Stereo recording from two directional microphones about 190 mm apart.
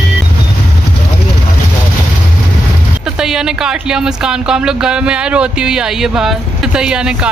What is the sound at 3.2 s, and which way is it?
Speech, 5° right (ahead or behind).